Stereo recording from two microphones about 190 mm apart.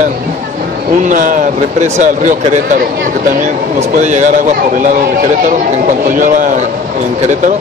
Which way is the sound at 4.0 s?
40° right (ahead or behind).